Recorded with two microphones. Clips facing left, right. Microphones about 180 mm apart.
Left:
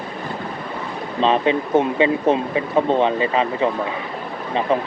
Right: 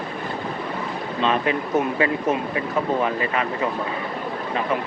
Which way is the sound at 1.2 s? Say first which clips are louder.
Left 5 dB; 30° left (ahead or behind).